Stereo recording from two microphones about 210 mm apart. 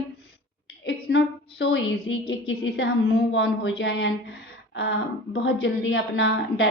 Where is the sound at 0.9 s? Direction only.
55° left (ahead or behind).